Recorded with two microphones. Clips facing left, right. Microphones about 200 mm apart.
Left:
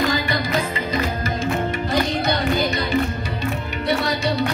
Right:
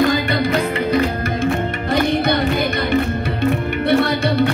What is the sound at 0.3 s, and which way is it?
Music, 65° right (ahead or behind).